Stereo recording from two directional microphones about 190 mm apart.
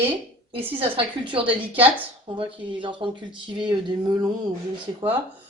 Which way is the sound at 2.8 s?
25° right (ahead or behind).